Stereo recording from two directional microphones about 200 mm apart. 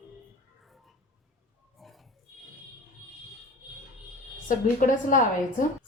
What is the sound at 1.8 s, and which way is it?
Pig, centre (ahead or behind).